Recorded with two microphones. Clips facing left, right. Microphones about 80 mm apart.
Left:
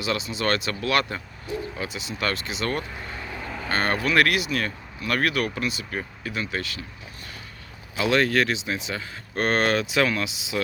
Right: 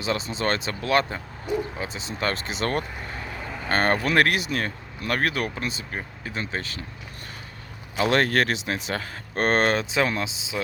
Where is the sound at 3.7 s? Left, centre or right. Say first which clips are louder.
Right 2 dB; right.